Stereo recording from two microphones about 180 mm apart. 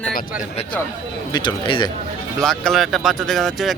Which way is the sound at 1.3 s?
25° left (ahead or behind).